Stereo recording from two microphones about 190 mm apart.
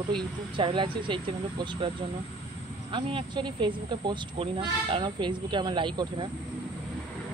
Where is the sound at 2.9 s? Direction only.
25° right (ahead or behind).